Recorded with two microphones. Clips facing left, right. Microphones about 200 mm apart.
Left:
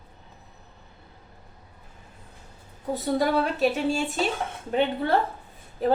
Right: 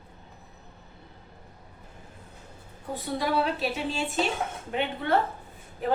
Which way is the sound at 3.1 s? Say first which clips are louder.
Left 2 dB; 45° left (ahead or behind).